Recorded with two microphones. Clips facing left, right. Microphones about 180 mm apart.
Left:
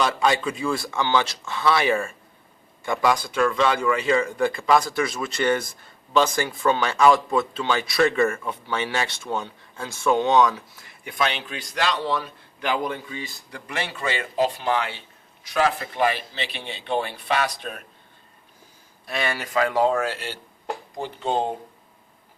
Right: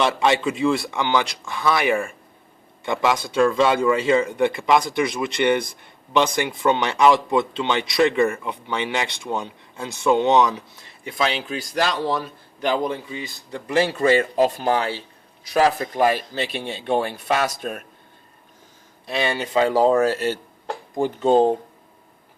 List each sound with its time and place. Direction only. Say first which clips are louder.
0.0 s speech: right 2 dB; 25° right (ahead or behind)
11.3 s a man's voice: right 5 dB; 35° right (ahead or behind)
12.8 s speech: right 3 dB; 20° right (ahead or behind)
13.7 s a man's voice: right 11 dB; 35° right (ahead or behind)
19.0 s a man's voice: right 4 dB; 25° right (ahead or behind); by 21.5 s 40° right (ahead or behind)